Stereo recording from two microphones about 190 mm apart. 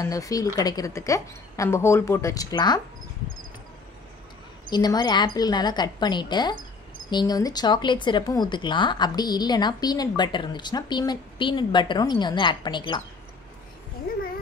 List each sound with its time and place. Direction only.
0.0 s a woman's voice: 20° left (ahead or behind)
4.6 s speech: 20° left (ahead or behind)